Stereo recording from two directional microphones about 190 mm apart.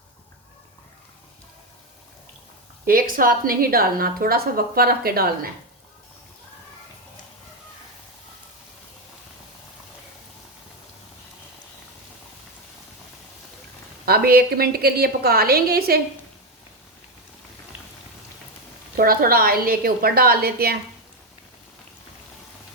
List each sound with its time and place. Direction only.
2.8 s a woman's voice: 50° right (ahead or behind)
14.0 s a woman's voice: 55° right (ahead or behind)
18.9 s a woman's voice: 50° right (ahead or behind)